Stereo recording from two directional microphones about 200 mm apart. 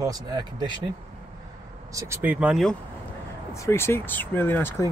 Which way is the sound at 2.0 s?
10° right (ahead or behind).